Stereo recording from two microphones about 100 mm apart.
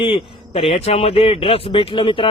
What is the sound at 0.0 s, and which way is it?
Speech, 70° left (ahead or behind).